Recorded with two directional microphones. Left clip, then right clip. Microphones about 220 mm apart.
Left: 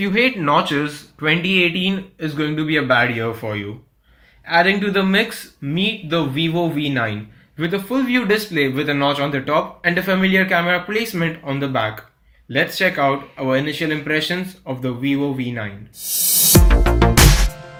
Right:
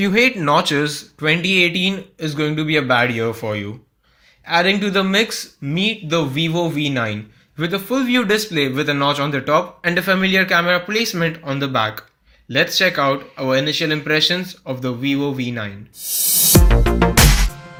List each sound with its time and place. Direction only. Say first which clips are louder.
0.0 s a man's voice: right 2 dB; 35° right (ahead or behind)
16.0 s music: even; centre (ahead or behind)